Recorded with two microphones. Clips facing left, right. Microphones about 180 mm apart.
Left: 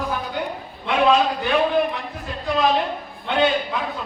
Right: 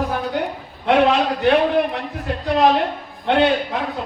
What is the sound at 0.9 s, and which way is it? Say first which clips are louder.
A man's voice: right 2 dB; 65° right (ahead or behind).